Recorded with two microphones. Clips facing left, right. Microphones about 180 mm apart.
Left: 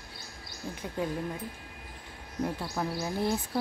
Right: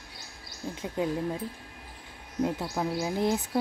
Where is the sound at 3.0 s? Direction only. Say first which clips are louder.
Right 3 dB; 15° right (ahead or behind).